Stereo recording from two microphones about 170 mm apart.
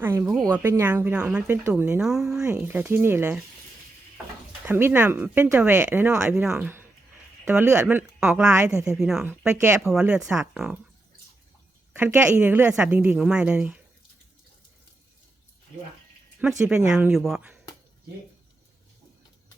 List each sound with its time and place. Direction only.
0.0 s speech: 15° right (ahead or behind)
4.6 s speech: 10° right (ahead or behind)
8.4 s speech: 15° right (ahead or behind)
9.0 s speech: 5° right (ahead or behind)
9.5 s speech: 15° right (ahead or behind)
10.0 s speech: 5° right (ahead or behind)
11.9 s speech: 10° right (ahead or behind)
16.4 s speech: 5° right (ahead or behind)
17.2 s speech: centre (ahead or behind)